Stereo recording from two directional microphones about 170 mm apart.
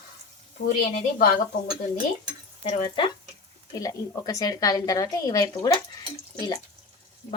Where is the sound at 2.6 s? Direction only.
30° left (ahead or behind).